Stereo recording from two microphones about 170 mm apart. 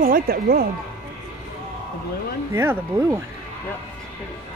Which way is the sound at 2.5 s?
15° right (ahead or behind).